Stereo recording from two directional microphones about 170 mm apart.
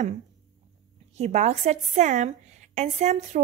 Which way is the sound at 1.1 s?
40° right (ahead or behind).